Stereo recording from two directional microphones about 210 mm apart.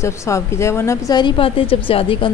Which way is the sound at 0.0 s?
15° left (ahead or behind).